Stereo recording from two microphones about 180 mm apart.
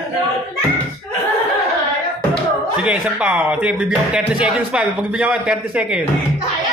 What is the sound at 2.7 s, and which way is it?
A man's voice, 5° right (ahead or behind).